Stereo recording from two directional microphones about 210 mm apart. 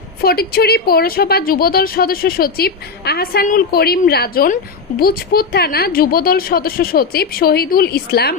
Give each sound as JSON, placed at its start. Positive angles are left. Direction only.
{"t": 0.2, "sound": "a woman's voice", "side_deg": 45}